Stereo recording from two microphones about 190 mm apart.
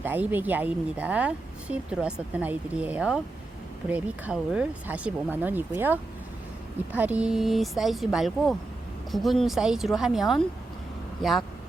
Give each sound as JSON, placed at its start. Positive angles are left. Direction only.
{"t": 0.0, "sound": "speech", "side_deg": -10}